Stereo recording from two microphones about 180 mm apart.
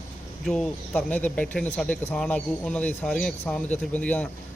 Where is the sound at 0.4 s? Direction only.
Centre (ahead or behind).